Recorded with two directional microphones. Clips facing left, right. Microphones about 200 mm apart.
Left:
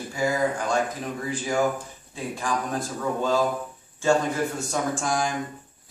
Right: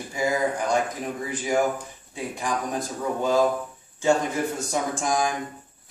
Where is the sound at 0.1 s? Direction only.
20° right (ahead or behind).